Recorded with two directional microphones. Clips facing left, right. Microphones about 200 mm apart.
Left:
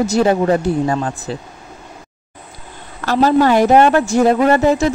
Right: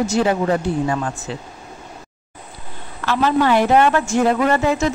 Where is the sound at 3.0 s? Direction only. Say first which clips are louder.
Left 5 dB; 40° left (ahead or behind).